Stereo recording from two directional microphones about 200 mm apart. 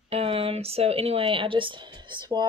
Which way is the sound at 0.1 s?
30° right (ahead or behind).